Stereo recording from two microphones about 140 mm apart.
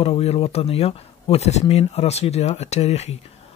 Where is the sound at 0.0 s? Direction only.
45° left (ahead or behind).